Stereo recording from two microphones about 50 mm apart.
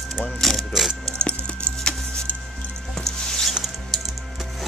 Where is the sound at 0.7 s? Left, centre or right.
Centre.